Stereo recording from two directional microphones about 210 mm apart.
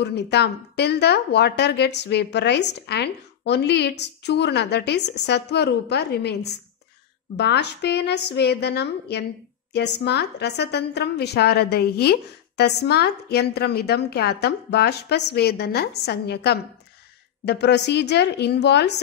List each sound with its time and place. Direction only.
0.0 s a woman's voice: 55° left (ahead or behind)